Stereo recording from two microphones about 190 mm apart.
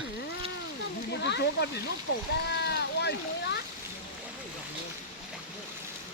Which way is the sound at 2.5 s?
60° left (ahead or behind).